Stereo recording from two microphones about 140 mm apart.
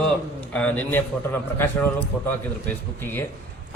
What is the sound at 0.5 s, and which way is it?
A man's voice, 10° left (ahead or behind).